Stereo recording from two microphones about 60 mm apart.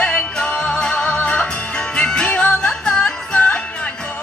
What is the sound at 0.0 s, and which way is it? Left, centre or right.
Music, centre.